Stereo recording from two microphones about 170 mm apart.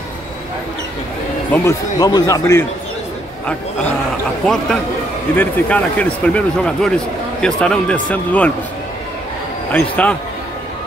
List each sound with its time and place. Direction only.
1.5 s a man's voice: 15° left (ahead or behind)
5.4 s speech: 10° left (ahead or behind)
9.7 s speech: 5° left (ahead or behind)